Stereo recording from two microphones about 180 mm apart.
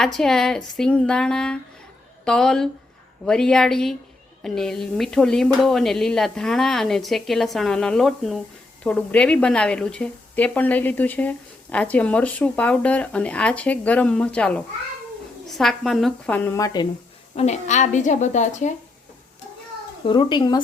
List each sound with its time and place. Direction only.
0.0 s a woman's voice: 5° left (ahead or behind)
17.3 s a woman's voice: 40° left (ahead or behind)
20.1 s speech: 25° left (ahead or behind)